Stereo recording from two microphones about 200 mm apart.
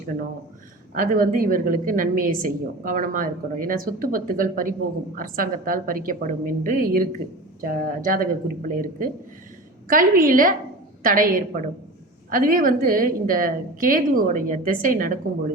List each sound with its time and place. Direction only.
0.9 s a woman's voice: 45° right (ahead or behind)